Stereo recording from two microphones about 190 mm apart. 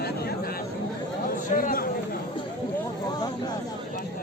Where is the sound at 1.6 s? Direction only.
45° left (ahead or behind).